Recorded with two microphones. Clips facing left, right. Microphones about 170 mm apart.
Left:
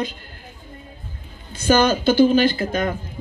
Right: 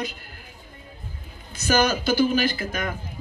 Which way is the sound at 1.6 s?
25° left (ahead or behind).